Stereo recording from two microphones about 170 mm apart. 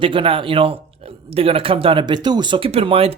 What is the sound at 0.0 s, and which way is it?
Speech, 30° right (ahead or behind).